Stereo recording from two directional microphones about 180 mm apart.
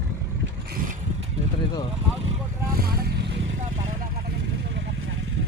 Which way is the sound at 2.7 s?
55° right (ahead or behind).